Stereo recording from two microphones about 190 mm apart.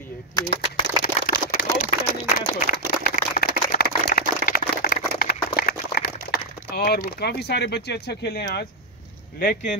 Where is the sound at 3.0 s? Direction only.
50° left (ahead or behind).